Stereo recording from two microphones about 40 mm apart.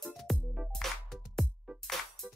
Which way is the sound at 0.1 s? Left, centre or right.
Centre.